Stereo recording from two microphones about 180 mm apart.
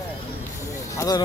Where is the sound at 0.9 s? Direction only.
20° left (ahead or behind).